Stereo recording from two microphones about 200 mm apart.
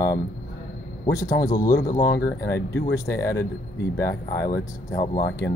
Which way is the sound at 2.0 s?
55° left (ahead or behind).